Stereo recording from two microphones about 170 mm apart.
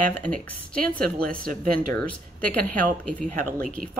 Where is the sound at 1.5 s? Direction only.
55° right (ahead or behind).